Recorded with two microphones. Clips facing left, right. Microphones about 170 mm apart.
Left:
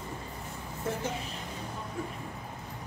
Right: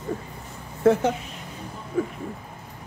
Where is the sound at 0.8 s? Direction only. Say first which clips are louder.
Right 15 dB; 80° right.